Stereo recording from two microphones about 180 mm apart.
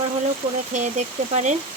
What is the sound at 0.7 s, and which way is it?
Speech, 40° right (ahead or behind).